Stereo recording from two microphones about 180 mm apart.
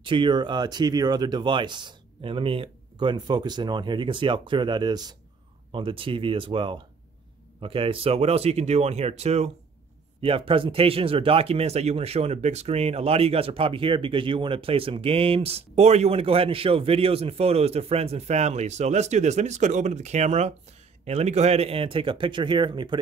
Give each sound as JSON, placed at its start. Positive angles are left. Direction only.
{"t": 0.0, "sound": "speech", "side_deg": -25}